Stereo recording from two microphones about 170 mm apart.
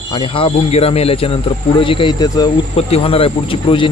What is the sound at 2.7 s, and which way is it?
Speech, 35° left (ahead or behind).